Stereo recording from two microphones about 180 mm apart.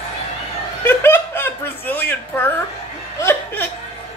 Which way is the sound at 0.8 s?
10° left (ahead or behind).